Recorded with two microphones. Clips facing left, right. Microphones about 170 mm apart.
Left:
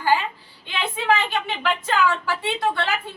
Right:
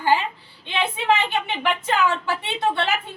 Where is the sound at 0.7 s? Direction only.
20° right (ahead or behind).